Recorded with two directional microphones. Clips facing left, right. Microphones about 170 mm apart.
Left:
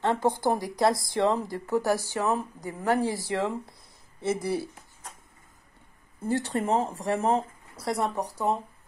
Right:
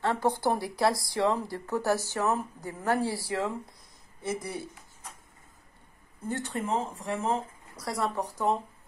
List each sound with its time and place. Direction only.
0.0 s speech: 20° left (ahead or behind)
6.2 s speech: 35° left (ahead or behind)
7.7 s speech: 25° left (ahead or behind)